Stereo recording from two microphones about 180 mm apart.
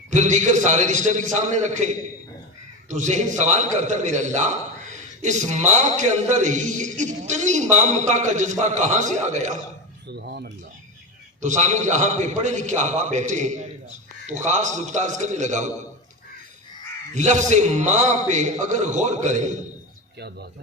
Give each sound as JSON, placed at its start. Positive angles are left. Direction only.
{"t": 0.1, "sound": "a man's voice", "side_deg": -40}
{"t": 10.1, "sound": "speech", "side_deg": -65}
{"t": 11.3, "sound": "a man's voice", "side_deg": -40}
{"t": 17.2, "sound": "a man's voice", "side_deg": -40}
{"t": 20.1, "sound": "speech", "side_deg": -65}